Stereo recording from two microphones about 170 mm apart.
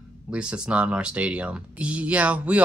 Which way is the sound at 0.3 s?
5° right (ahead or behind).